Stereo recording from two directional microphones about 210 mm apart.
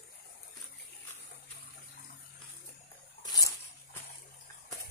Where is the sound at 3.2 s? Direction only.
20° left (ahead or behind).